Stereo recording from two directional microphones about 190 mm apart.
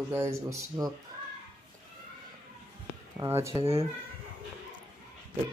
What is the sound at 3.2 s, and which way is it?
Speech, 15° right (ahead or behind).